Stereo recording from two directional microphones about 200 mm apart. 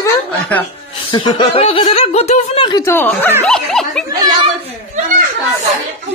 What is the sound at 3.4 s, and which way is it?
Dog, 5° left (ahead or behind).